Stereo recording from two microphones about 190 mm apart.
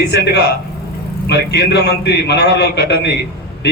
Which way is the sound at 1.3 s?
60° left (ahead or behind).